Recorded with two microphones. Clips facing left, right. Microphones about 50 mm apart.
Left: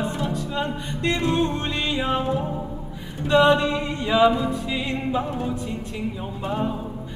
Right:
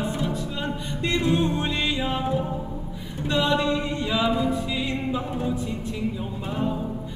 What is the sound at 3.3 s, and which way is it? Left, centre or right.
Music, left.